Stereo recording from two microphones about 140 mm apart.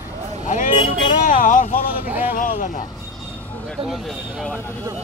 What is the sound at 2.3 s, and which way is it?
Speech, 70° left (ahead or behind).